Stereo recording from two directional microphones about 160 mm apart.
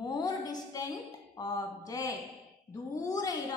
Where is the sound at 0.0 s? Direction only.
25° left (ahead or behind).